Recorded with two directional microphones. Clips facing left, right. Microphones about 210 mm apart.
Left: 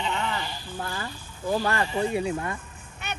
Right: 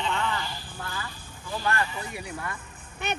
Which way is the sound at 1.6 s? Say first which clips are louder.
Left 4 dB; 30° left (ahead or behind).